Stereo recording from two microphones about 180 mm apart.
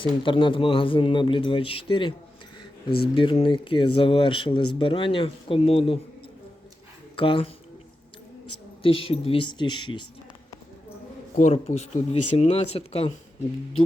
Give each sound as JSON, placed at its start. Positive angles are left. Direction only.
{"t": 0.0, "sound": "speech", "side_deg": 30}
{"t": 3.2, "sound": "speech", "side_deg": 30}
{"t": 7.2, "sound": "speech", "side_deg": 30}
{"t": 8.8, "sound": "speech", "side_deg": 30}
{"t": 11.3, "sound": "speech", "side_deg": 35}